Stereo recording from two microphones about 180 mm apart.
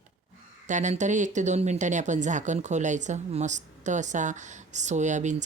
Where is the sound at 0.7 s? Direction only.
40° right (ahead or behind).